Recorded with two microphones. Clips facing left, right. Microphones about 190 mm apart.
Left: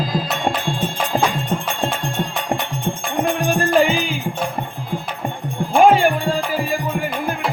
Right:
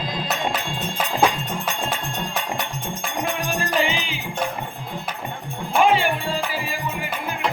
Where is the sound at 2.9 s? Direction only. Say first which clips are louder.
Left 8 dB; 45° left (ahead or behind).